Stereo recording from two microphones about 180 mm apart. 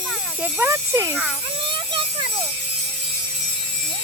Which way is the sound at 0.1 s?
5° right (ahead or behind).